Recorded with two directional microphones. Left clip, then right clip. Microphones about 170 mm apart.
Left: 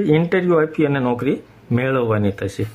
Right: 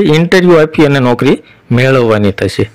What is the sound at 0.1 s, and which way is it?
Speech, 35° right (ahead or behind).